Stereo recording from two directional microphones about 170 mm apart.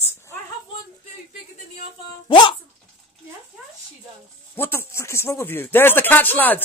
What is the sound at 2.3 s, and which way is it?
Speech, 30° left (ahead or behind).